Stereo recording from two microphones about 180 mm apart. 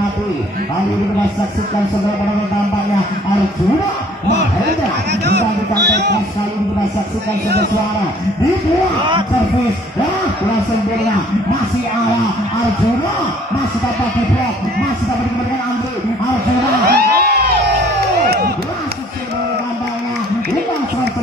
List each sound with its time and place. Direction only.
5.2 s speech: 65° right (ahead or behind)
16.8 s music: 60° right (ahead or behind)